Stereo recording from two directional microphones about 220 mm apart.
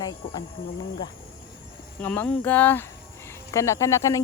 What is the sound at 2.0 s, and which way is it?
Speech, 10° left (ahead or behind).